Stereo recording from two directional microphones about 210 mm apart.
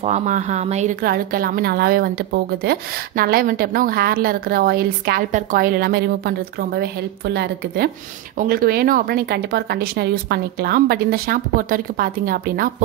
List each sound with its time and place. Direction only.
0.0 s a woman's voice: 35° right (ahead or behind)